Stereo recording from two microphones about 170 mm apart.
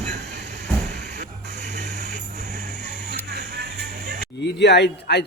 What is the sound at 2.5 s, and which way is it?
Vehicle, 80° right.